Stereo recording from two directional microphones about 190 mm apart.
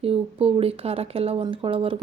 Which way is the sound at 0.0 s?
30° right (ahead or behind).